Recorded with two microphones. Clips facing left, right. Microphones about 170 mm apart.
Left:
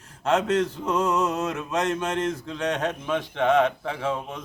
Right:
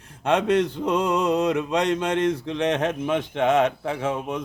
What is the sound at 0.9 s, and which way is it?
Mantra, 15° right (ahead or behind).